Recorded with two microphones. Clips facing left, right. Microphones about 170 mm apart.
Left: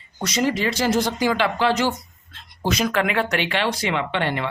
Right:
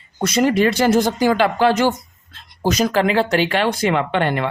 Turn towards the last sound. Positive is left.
turn(degrees=-50)  # may be behind; listen again after turning